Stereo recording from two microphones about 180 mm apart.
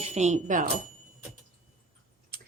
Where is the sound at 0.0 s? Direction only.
40° right (ahead or behind).